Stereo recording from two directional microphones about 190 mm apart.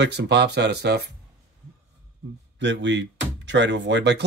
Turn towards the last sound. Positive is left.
turn(degrees=-65)  # may be behind; listen again after turning